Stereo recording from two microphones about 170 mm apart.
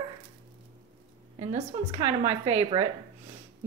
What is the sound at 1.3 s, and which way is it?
A woman's voice, 40° right (ahead or behind).